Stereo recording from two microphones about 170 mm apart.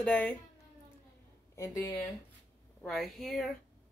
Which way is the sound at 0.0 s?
10° left (ahead or behind).